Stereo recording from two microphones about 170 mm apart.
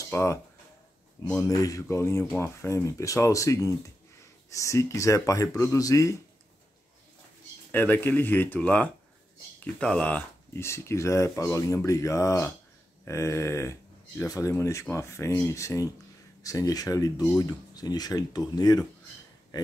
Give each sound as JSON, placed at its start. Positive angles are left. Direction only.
{"t": 0.1, "sound": "speech", "side_deg": 15}
{"t": 7.7, "sound": "speech", "side_deg": 10}
{"t": 17.2, "sound": "speech", "side_deg": 10}
{"t": 17.5, "sound": "speech", "side_deg": 25}